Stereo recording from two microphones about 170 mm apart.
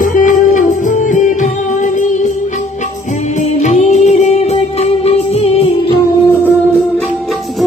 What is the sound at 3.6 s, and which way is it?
Music, 40° left (ahead or behind).